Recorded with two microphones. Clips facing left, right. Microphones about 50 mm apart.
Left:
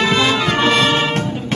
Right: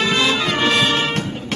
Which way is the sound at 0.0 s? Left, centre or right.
Centre.